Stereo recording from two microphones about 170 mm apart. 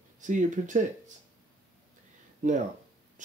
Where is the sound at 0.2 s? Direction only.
45° right (ahead or behind).